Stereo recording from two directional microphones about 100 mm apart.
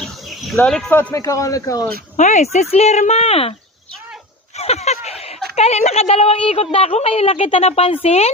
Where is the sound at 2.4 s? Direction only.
90° left.